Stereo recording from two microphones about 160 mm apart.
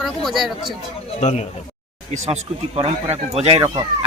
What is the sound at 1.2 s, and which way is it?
Speech, 45° left (ahead or behind).